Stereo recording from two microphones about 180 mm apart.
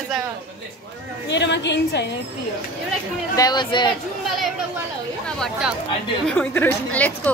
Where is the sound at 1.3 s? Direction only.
75° left (ahead or behind).